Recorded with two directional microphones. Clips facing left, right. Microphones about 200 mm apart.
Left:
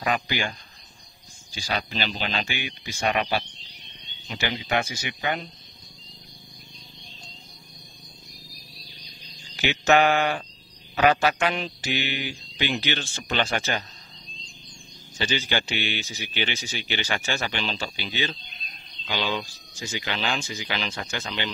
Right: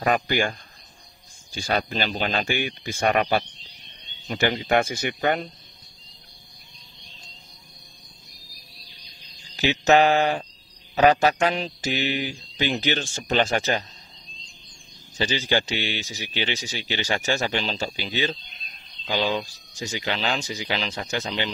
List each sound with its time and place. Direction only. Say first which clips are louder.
0.0 s speech: right 4 dB; 50° right (ahead or behind)
9.6 s speech: right 2 dB; 35° right (ahead or behind)
15.1 s speech: right 3 dB; 35° right (ahead or behind)